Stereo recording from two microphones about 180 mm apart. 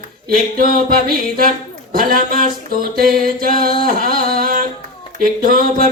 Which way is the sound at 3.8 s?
50° right (ahead or behind).